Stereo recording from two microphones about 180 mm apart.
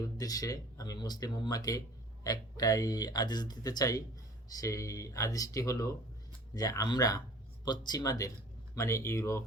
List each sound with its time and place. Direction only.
0.2 s speech: 20° left (ahead or behind)